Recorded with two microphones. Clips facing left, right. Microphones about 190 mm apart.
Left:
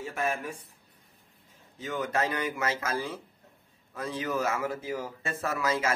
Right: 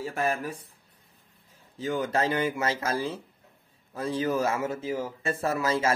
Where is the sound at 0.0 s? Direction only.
35° right (ahead or behind).